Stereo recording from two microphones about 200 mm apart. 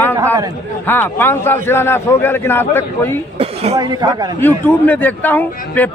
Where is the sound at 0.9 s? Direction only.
10° left (ahead or behind).